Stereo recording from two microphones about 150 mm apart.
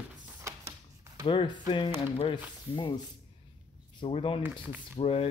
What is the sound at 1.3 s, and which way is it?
Speech, 30° left (ahead or behind).